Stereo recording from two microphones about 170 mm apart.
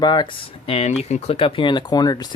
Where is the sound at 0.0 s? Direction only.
25° left (ahead or behind).